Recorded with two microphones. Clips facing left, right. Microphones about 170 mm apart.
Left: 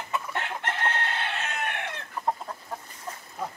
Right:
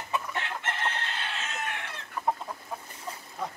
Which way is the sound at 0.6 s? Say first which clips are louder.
Left 3 dB; 60° left (ahead or behind).